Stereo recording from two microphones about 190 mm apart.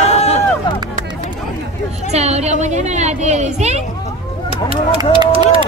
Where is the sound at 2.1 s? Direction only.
35° right (ahead or behind).